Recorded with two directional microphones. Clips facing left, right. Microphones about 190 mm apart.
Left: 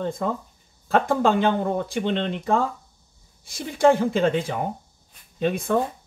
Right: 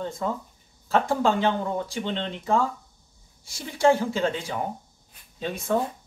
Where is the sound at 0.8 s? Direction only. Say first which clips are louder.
Left 2 dB; 60° left (ahead or behind).